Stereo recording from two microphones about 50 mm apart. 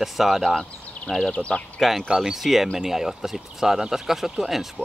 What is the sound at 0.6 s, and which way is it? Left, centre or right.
Speech, centre.